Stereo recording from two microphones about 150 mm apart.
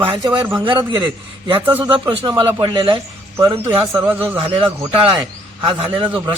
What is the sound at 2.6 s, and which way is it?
Speech, 35° right (ahead or behind).